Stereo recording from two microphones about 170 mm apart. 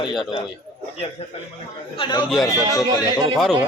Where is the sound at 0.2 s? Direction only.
25° left (ahead or behind).